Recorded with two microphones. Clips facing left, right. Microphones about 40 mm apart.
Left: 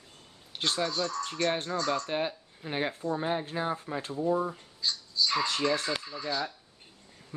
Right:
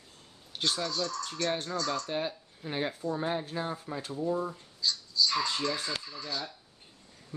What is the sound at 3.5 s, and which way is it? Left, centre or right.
Speech, left.